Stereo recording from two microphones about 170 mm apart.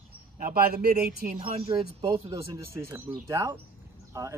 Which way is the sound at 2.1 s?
20° right (ahead or behind).